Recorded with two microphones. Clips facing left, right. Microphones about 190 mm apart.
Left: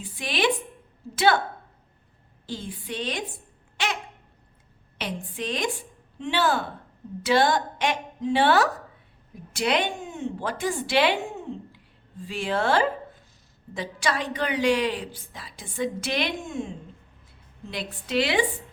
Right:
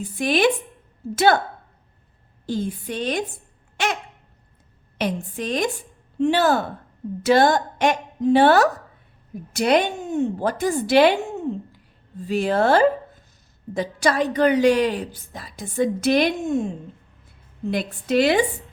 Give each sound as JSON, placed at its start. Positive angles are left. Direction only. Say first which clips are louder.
{"t": 0.0, "sound": "a woman's voice", "louder": "right 7 dB", "side_deg": -45}
{"t": 2.5, "sound": "a woman's voice", "louder": "right 8 dB", "side_deg": -45}
{"t": 4.9, "sound": "a woman's voice", "louder": "right 7 dB", "side_deg": -45}
{"t": 12.3, "sound": "a woman's voice", "louder": "right 6 dB", "side_deg": -40}
{"t": 17.7, "sound": "a woman's voice", "louder": "right 8 dB", "side_deg": -50}